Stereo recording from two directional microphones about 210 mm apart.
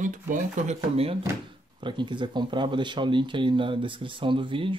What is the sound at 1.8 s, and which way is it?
Speech, 20° right (ahead or behind).